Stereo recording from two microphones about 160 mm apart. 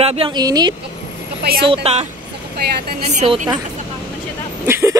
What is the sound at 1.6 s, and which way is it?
Speech, 35° right (ahead or behind).